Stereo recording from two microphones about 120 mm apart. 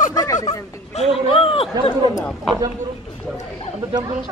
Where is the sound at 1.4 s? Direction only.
50° left (ahead or behind).